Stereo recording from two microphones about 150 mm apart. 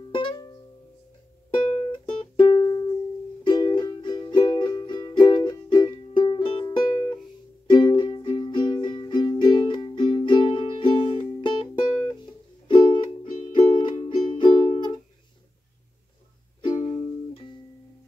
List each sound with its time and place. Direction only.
0.1 s music: 30° left (ahead or behind)
1.7 s music: 40° left (ahead or behind)
12.6 s music: 30° left (ahead or behind)
16.6 s music: 30° left (ahead or behind)